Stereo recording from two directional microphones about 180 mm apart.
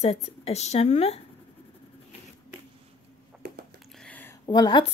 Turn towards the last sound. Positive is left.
turn(degrees=25)  # may be behind; listen again after turning